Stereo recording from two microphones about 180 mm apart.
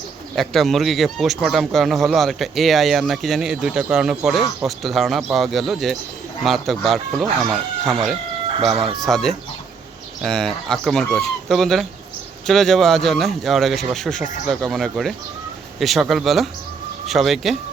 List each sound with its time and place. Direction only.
0.3 s speech: centre (ahead or behind)
8.7 s speech: 30° right (ahead or behind)
9.0 s speech: centre (ahead or behind)